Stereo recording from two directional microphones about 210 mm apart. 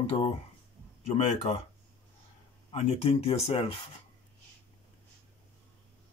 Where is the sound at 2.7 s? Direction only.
30° left (ahead or behind).